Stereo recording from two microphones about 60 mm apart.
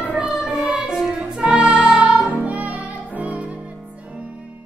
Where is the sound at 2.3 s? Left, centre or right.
Right.